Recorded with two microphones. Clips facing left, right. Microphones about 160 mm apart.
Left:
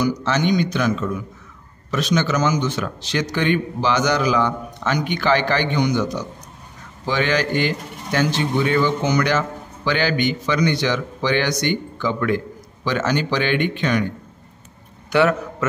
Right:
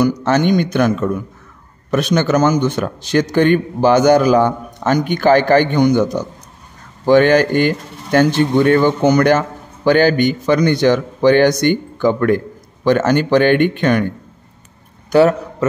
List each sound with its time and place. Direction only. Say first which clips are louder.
0.0 s speech: right 6 dB; 55° right (ahead or behind)
15.0 s a man's voice: right 6 dB; 40° right (ahead or behind)